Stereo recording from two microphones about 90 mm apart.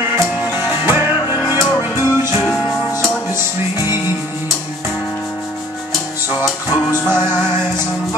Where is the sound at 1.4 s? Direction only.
35° left (ahead or behind).